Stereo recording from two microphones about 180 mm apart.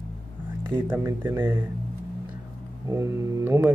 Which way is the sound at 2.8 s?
15° right (ahead or behind).